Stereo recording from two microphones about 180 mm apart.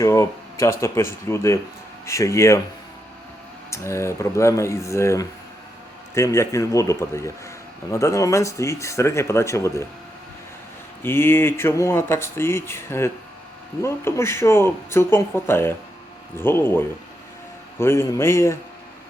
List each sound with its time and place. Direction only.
0.0 s speech: 15° left (ahead or behind)
3.7 s speech: 15° left (ahead or behind)
11.0 s speech: 15° left (ahead or behind)